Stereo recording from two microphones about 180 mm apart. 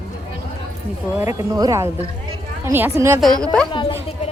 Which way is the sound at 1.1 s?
15° right (ahead or behind).